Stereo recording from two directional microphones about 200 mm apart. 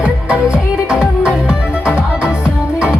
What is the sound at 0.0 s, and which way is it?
Music, 5° right (ahead or behind).